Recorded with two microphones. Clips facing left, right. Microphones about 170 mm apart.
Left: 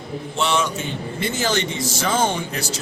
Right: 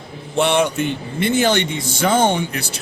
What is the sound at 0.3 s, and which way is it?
A man's voice, 55° right (ahead or behind).